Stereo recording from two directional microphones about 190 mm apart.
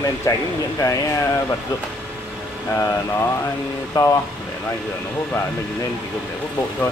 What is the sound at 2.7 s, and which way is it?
Speech, 15° left (ahead or behind).